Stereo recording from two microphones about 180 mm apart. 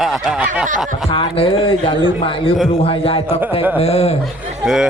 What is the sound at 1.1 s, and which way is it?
A man's voice, 30° left (ahead or behind).